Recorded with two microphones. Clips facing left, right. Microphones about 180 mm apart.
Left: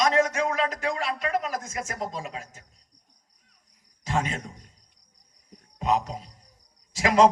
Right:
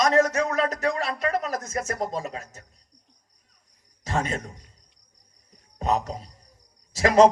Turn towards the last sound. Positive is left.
turn(degrees=-45)  # may be behind; listen again after turning